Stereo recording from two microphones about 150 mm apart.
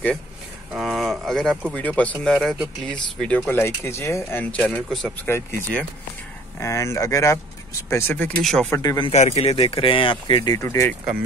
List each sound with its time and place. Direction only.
0.7 s speech: 5° right (ahead or behind); by 5.6 s 15° left (ahead or behind)
6.6 s speech: 20° left (ahead or behind)
8.4 s speech: 5° left (ahead or behind)
8.7 s speech: 25° left (ahead or behind)
9.1 s speech: 45° left (ahead or behind); by 11.0 s 15° left (ahead or behind)